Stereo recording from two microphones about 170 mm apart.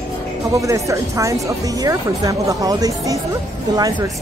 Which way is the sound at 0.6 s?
20° right (ahead or behind).